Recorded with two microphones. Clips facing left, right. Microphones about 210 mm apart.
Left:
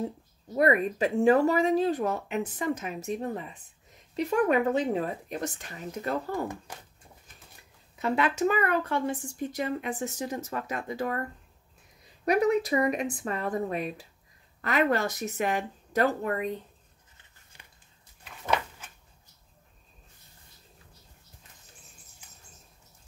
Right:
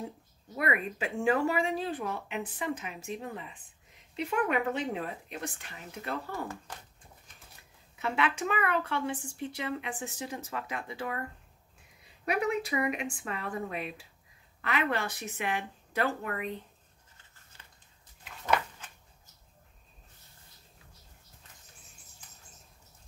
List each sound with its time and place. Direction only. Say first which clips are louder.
0.6 s speech: left 8 dB; 40° left (ahead or behind)
8.0 s speech: left 5 dB; 40° left (ahead or behind)
12.3 s speech: left 6 dB; 40° left (ahead or behind)
17.5 s a sound: left 1 dB; 15° left (ahead or behind)